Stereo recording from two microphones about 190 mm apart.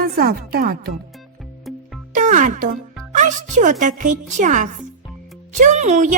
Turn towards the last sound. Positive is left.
turn(degrees=-40)  # may be behind; listen again after turning